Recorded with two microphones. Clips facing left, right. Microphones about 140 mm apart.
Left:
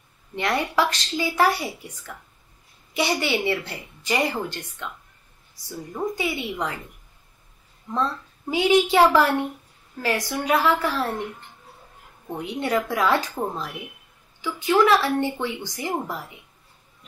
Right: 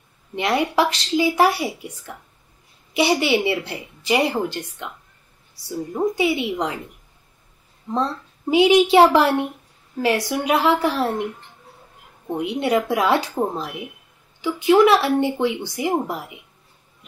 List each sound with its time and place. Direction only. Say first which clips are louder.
0.4 s a woman's voice: right 3 dB; 10° right (ahead or behind)
3.0 s a woman's voice: right 5 dB; 15° right (ahead or behind)
5.9 s a woman's voice: right 6 dB; 15° right (ahead or behind)
7.9 s a woman's voice: right 3 dB; 20° right (ahead or behind)
12.3 s a woman's voice: right 5 dB; 15° right (ahead or behind)